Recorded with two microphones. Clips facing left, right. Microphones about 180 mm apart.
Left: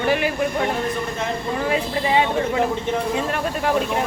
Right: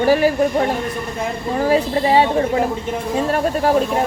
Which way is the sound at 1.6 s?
35° right (ahead or behind).